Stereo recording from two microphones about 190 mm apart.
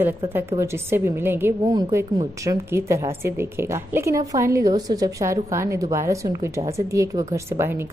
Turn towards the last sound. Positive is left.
turn(degrees=-15)  # may be behind; listen again after turning